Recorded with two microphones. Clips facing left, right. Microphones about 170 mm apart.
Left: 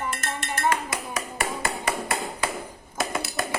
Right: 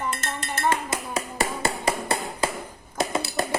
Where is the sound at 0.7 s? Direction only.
30° right (ahead or behind).